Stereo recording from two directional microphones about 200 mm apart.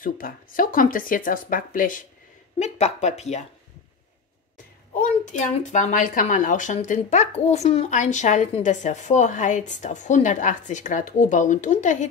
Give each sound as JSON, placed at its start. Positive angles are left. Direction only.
{"t": 0.0, "sound": "speech", "side_deg": 45}
{"t": 4.9, "sound": "speech", "side_deg": 40}